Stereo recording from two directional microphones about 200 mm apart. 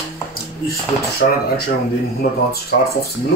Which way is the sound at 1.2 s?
45° left (ahead or behind).